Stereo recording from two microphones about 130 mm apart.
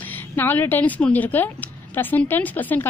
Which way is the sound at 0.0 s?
15° left (ahead or behind).